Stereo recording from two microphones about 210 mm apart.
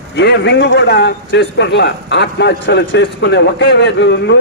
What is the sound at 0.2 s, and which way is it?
A man's voice, 55° left (ahead or behind).